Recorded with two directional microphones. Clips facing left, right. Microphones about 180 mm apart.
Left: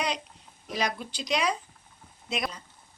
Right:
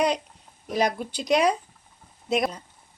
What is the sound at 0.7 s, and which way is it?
A woman's voice, 50° right (ahead or behind).